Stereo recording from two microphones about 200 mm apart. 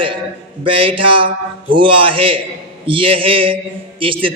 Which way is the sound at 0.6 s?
25° right (ahead or behind).